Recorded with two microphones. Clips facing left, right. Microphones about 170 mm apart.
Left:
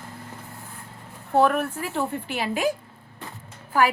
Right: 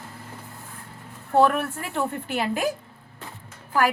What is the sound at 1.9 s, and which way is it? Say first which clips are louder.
Speech: right 3 dB; 50° right (ahead or behind).